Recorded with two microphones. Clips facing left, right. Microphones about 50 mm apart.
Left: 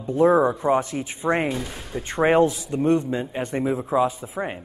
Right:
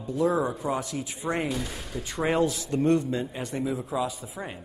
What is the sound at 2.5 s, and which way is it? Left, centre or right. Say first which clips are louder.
A man's voice: left 3 dB; centre.